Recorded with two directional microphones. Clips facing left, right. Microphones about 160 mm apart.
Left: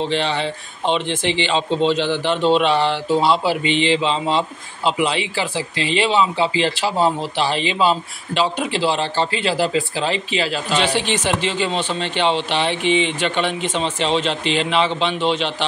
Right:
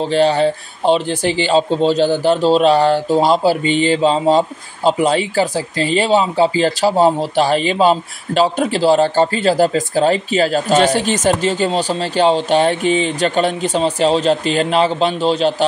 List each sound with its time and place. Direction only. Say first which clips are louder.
0.0 s speech: right 7 dB; 40° right (ahead or behind)